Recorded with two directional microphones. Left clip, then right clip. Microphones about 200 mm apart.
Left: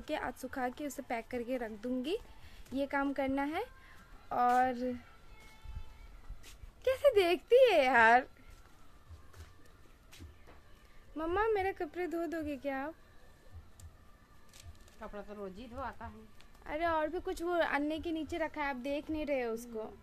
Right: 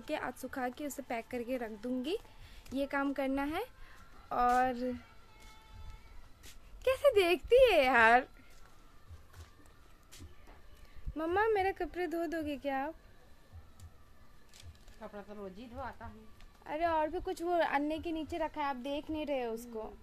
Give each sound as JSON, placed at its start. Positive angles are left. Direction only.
{"t": 0.0, "sound": "a woman's voice", "side_deg": 0}
{"t": 6.4, "sound": "speech", "side_deg": -5}
{"t": 11.1, "sound": "speech", "side_deg": -15}
{"t": 15.0, "sound": "speech", "side_deg": 15}
{"t": 16.6, "sound": "speech", "side_deg": 0}